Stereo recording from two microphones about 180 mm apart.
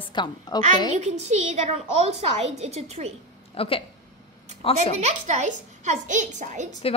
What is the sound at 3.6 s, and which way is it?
A woman's voice, 30° left (ahead or behind).